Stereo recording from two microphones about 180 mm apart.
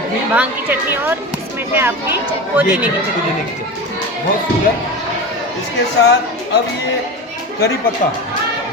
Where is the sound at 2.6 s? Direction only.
10° right (ahead or behind).